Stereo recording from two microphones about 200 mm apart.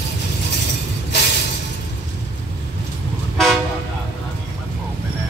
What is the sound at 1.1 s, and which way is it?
Music, 60° left (ahead or behind).